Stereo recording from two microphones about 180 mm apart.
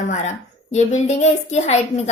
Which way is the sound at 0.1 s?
40° left (ahead or behind).